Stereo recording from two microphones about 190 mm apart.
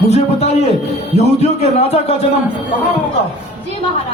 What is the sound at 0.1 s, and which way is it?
Speech, 35° left (ahead or behind).